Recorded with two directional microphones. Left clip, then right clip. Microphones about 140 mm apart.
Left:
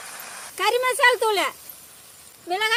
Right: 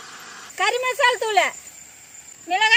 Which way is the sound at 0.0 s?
20° left (ahead or behind).